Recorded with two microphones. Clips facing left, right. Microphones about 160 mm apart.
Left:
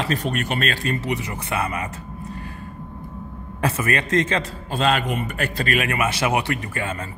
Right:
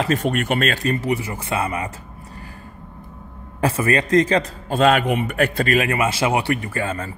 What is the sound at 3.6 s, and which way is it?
A man's voice, 30° right (ahead or behind).